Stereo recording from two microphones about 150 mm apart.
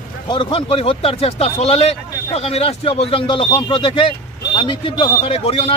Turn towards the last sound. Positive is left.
turn(degrees=40)  # may be behind; listen again after turning